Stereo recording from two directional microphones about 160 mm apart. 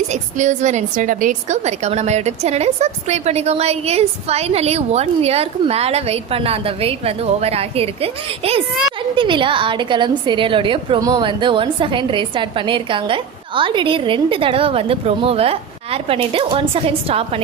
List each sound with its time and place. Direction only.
0.1 s a woman's voice: 50° right (ahead or behind)